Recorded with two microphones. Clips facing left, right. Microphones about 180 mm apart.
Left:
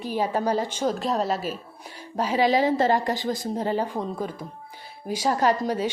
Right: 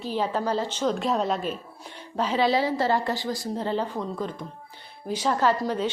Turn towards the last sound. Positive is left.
turn(degrees=10)  # may be behind; listen again after turning